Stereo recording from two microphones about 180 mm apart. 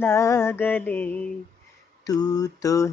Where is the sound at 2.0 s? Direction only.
20° left (ahead or behind).